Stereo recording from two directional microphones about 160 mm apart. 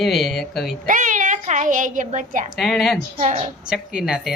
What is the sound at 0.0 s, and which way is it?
Speech, centre (ahead or behind).